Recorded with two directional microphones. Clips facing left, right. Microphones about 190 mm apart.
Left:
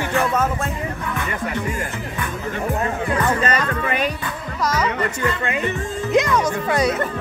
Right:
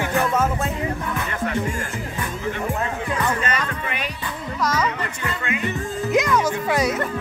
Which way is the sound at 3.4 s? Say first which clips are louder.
Left 5 dB; 40° left (ahead or behind).